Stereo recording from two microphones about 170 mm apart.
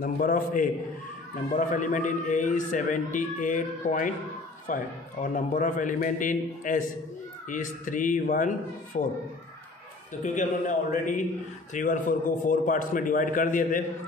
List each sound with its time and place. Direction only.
0.0 s a man's voice: 55° left (ahead or behind)
1.7 s a man's voice: 50° left (ahead or behind)
10.2 s a man's voice: 50° left (ahead or behind)